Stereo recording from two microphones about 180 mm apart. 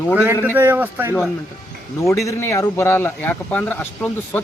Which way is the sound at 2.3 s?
15° left (ahead or behind).